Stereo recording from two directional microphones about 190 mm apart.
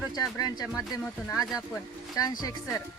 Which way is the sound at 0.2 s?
20° left (ahead or behind).